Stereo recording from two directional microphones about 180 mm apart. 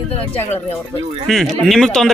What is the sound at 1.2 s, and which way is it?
Speech, centre (ahead or behind).